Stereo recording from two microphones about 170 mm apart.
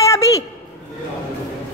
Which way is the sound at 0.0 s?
20° left (ahead or behind).